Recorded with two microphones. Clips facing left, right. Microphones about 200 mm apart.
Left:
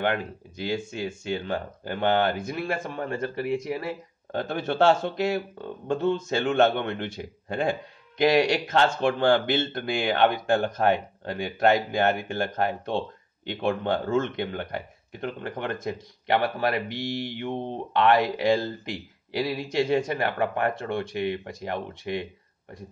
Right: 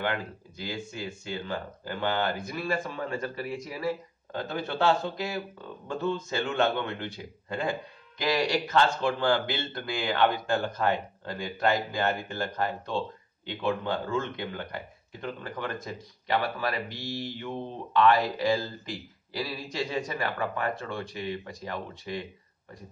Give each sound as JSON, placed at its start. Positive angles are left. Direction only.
{"t": 0.0, "sound": "speech", "side_deg": 60}